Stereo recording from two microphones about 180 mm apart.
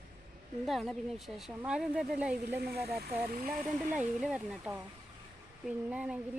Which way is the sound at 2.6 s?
60° right (ahead or behind).